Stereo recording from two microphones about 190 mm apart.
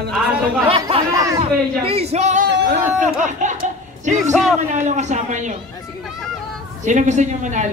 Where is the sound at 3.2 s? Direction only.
40° right (ahead or behind).